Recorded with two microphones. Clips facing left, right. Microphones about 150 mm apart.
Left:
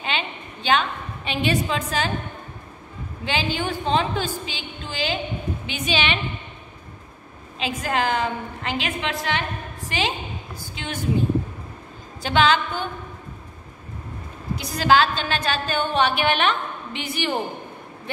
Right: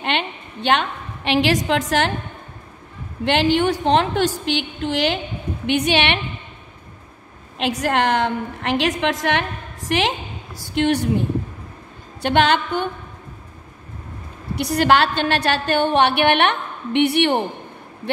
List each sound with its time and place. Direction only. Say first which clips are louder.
0.0 s a sound: right 5 dB; 65° right (ahead or behind); by 2.1 s 85° right
3.3 s a woman's voice: right 8 dB; 75° right (ahead or behind)
5.7 s a woman's voice: right 7 dB; 65° right (ahead or behind)
7.5 s a woman's voice: right 5 dB; 75° right (ahead or behind)
12.2 s a woman's voice: right 2 dB; 65° right (ahead or behind)
14.5 s a woman's voice: right 3 dB; 65° right (ahead or behind)